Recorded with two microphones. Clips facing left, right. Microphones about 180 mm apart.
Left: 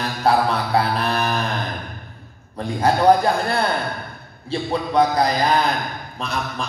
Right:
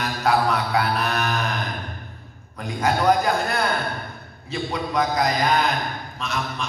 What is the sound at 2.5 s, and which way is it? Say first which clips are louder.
A man's voice: left 4 dB; 30° left (ahead or behind).